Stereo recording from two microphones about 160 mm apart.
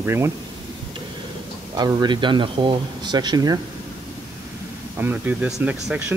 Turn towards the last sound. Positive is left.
turn(degrees=-10)  # may be behind; listen again after turning